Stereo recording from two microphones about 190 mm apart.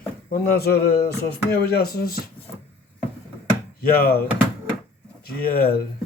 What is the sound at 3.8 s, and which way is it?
Speech, 50° left (ahead or behind).